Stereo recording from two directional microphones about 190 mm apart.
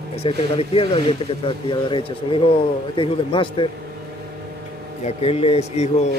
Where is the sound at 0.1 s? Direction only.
30° left (ahead or behind).